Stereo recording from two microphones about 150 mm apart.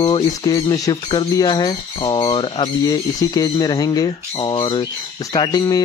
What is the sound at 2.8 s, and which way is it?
Speech, 25° left (ahead or behind).